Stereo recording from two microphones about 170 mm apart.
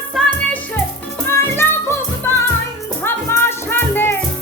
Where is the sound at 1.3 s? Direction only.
15° left (ahead or behind).